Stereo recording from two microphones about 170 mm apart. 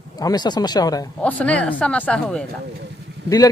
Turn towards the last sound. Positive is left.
turn(degrees=20)  # may be behind; listen again after turning